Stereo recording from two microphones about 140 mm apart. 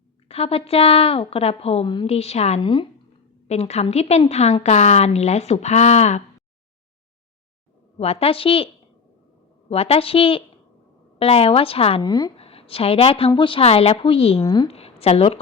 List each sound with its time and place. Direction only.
0.3 s a woman's voice: 45° left (ahead or behind)
2.6 s speech: 35° left (ahead or behind)
3.4 s a woman's voice: 50° left (ahead or behind)
7.9 s a woman's voice: 45° left (ahead or behind)
12.0 s speech: 25° left (ahead or behind)
12.4 s a woman's voice: 45° left (ahead or behind)
14.4 s speech: 30° left (ahead or behind)
14.7 s a woman's voice: 45° left (ahead or behind)